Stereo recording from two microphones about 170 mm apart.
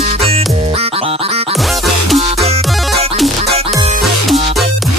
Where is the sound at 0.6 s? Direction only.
35° right (ahead or behind).